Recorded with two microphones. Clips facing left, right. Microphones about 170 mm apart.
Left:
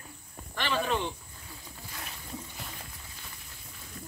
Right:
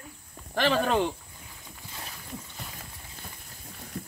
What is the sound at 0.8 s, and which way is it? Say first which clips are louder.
Speech: right 5 dB; 85° right.